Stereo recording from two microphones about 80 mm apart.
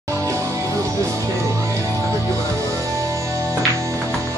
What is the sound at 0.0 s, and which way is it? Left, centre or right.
Music, right.